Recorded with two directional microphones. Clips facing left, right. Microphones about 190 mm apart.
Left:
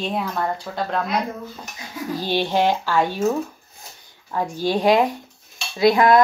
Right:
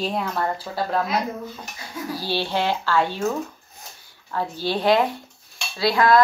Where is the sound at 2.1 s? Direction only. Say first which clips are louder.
Left 4 dB; 15° left (ahead or behind).